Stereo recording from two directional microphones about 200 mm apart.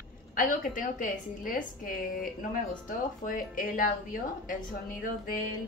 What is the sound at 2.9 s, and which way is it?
A woman's voice, 45° left (ahead or behind).